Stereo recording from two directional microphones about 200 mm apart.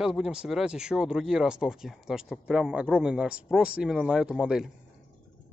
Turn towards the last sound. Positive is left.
turn(degrees=-5)  # may be behind; listen again after turning